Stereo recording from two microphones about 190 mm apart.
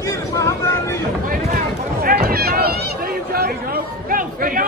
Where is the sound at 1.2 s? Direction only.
50° right (ahead or behind).